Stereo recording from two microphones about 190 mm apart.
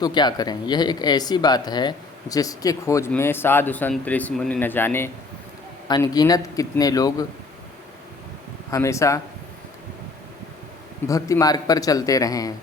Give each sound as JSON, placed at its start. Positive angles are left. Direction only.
{"t": 0.0, "sound": "speech", "side_deg": 20}
{"t": 8.7, "sound": "speech", "side_deg": 15}
{"t": 11.1, "sound": "speech", "side_deg": 20}